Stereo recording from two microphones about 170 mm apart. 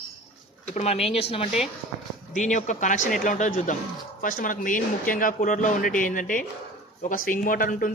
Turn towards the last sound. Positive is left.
turn(degrees=55)  # may be behind; listen again after turning